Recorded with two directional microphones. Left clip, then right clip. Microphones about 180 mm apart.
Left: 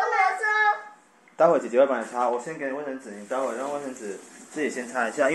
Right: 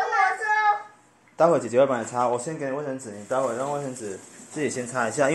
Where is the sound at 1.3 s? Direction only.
15° right (ahead or behind).